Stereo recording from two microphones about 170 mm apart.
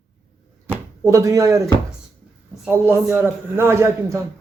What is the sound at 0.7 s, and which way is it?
Speech, 15° right (ahead or behind).